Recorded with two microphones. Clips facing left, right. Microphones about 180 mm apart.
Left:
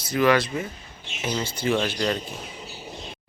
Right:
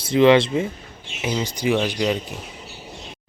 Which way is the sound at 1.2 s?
15° right (ahead or behind).